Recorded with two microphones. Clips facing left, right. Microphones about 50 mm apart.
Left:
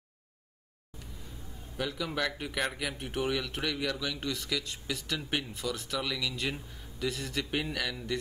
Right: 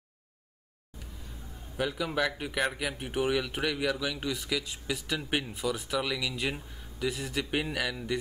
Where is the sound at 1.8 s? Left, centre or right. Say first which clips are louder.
Right 3 dB; centre.